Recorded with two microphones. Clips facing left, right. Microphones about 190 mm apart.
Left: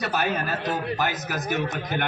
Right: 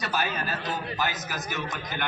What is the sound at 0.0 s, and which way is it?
A man's voice, 60° left (ahead or behind).